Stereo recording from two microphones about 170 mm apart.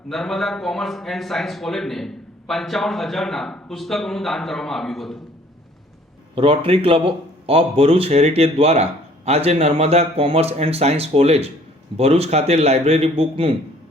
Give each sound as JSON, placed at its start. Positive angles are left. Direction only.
{"t": 0.1, "sound": "speech", "side_deg": 0}
{"t": 6.3, "sound": "speech", "side_deg": -30}